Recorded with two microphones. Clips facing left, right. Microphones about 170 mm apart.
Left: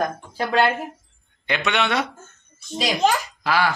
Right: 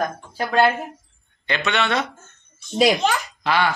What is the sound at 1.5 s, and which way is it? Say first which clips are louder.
A man's voice: even; 15° left (ahead or behind).